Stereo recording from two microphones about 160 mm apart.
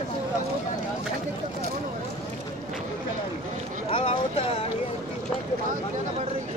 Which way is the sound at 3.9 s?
35° left (ahead or behind).